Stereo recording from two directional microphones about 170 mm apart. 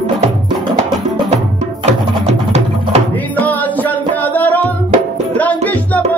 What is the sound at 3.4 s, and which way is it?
Music, 10° left (ahead or behind).